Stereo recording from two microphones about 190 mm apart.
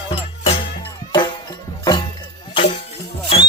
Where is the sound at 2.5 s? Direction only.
30° left (ahead or behind).